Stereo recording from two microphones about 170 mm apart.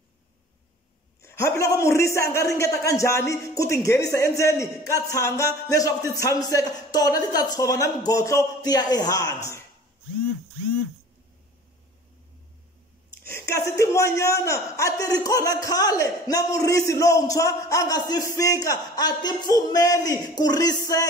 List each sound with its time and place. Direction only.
1.2 s a man's voice: 15° left (ahead or behind)
13.1 s a man's voice: 15° left (ahead or behind)